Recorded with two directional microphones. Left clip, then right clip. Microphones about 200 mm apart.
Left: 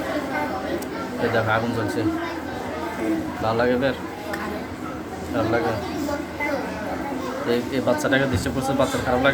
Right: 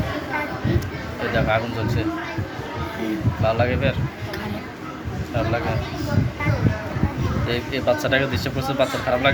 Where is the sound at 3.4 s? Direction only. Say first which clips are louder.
Even; 15° left (ahead or behind).